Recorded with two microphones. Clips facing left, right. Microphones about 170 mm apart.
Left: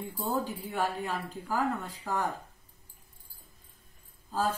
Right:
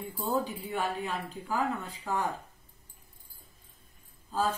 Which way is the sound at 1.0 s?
10° left (ahead or behind).